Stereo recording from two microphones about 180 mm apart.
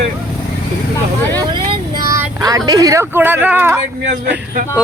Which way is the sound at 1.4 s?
25° right (ahead or behind).